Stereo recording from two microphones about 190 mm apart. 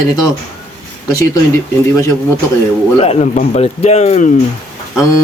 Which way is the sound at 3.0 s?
35° left (ahead or behind).